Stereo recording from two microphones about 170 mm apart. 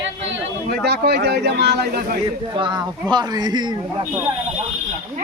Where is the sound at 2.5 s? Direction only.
30° right (ahead or behind).